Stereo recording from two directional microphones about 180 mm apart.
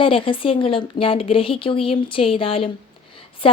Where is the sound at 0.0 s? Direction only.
30° left (ahead or behind).